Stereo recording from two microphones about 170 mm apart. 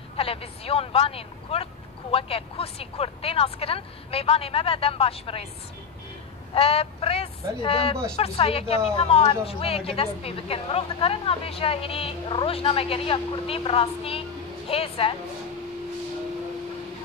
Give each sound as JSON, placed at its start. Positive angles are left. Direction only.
{"t": 0.2, "sound": "speech", "side_deg": 35}
{"t": 6.5, "sound": "speech", "side_deg": 35}